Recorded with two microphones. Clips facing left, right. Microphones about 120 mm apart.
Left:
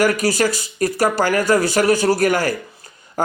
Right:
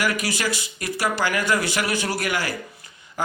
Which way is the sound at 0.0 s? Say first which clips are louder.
Left 8 dB; 40° left (ahead or behind).